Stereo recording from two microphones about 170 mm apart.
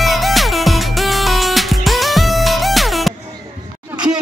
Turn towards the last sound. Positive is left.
turn(degrees=0)  # may be behind; listen again after turning